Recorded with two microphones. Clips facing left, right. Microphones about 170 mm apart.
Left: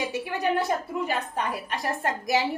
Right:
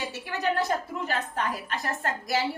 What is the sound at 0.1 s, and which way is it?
A woman's voice, 10° left (ahead or behind).